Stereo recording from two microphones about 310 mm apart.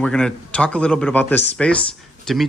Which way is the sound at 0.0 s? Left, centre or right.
Centre.